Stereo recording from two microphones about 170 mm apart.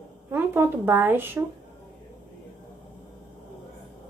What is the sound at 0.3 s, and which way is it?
Speech, 10° right (ahead or behind).